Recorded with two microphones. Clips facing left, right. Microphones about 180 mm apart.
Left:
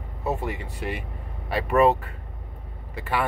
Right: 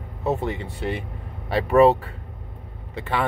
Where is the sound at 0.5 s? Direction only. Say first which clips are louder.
Right 4 dB; 30° right (ahead or behind).